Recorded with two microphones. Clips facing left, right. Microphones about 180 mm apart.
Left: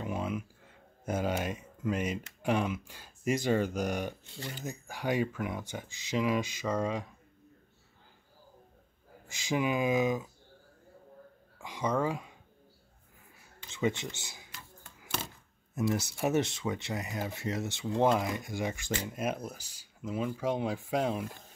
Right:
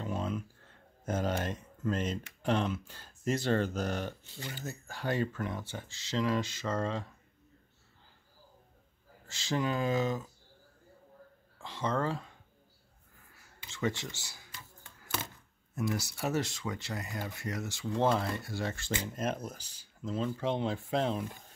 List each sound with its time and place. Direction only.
0.0 s a sound: 10° left (ahead or behind)
2.4 s speech: 10° left (ahead or behind)
9.3 s speech: 15° left (ahead or behind)
11.6 s speech: 15° left (ahead or behind)
13.7 s speech: 20° left (ahead or behind)
15.9 s speech: 20° left (ahead or behind)